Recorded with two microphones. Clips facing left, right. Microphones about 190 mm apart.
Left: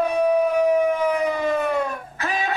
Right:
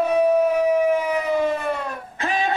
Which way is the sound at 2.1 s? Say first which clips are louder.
Right 3 dB; 30° right (ahead or behind).